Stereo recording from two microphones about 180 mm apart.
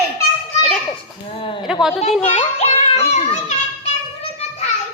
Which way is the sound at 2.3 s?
35° left (ahead or behind).